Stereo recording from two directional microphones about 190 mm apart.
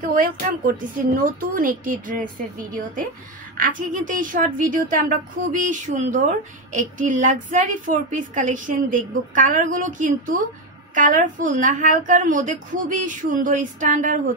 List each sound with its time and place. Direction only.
0.1 s a woman's voice: 45° right (ahead or behind)
3.5 s a woman's voice: 45° right (ahead or behind)